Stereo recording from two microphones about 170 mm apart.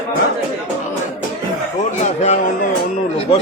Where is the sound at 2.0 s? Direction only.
40° left (ahead or behind).